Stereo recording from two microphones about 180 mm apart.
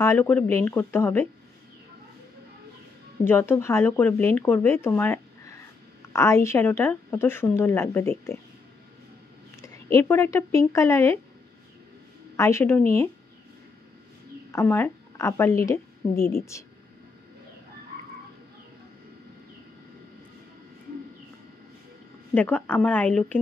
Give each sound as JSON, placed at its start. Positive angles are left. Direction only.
{"t": 0.0, "sound": "speech", "side_deg": 10}
{"t": 3.3, "sound": "speech", "side_deg": 15}
{"t": 9.6, "sound": "speech", "side_deg": 15}
{"t": 12.4, "sound": "speech", "side_deg": 15}
{"t": 14.5, "sound": "a woman's voice", "side_deg": 10}
{"t": 22.3, "sound": "speech", "side_deg": 10}